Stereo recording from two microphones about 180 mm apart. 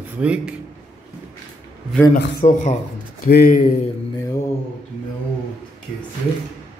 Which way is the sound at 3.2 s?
55° left (ahead or behind).